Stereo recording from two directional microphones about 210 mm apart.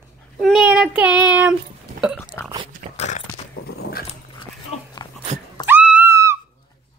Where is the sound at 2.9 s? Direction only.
35° left (ahead or behind).